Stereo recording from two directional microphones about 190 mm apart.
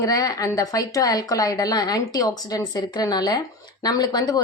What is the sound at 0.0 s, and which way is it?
Speech, 20° left (ahead or behind).